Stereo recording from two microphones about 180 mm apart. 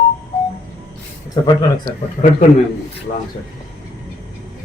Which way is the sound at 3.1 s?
50° left (ahead or behind).